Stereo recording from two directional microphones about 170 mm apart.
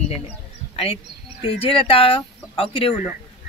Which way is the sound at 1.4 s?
35° left (ahead or behind).